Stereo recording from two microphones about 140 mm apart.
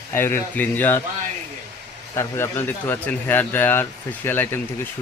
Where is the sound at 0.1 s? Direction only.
15° left (ahead or behind).